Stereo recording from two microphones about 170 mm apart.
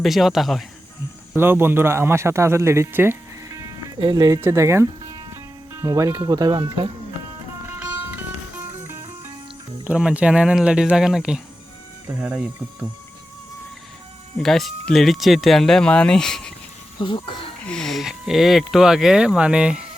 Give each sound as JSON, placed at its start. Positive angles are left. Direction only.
{"t": 0.0, "sound": "speech", "side_deg": 0}
{"t": 1.4, "sound": "speech", "side_deg": -15}
{"t": 7.7, "sound": "music", "side_deg": -10}
{"t": 9.8, "sound": "speech", "side_deg": -5}
{"t": 14.4, "sound": "speech", "side_deg": 0}
{"t": 17.0, "sound": "speech", "side_deg": 30}
{"t": 17.7, "sound": "speech", "side_deg": 5}